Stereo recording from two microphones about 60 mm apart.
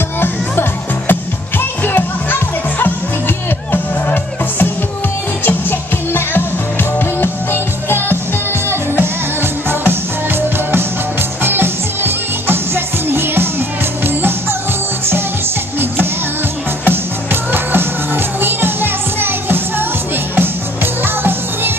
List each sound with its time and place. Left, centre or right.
0.2 s music: left
9.0 s music: right
16.8 s music: right